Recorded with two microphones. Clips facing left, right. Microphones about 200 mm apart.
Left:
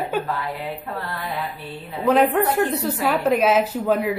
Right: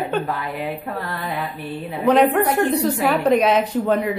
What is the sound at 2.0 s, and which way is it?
A woman's voice, centre (ahead or behind).